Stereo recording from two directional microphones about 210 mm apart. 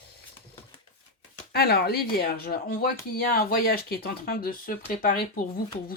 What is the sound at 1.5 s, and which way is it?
Speech, 50° left (ahead or behind).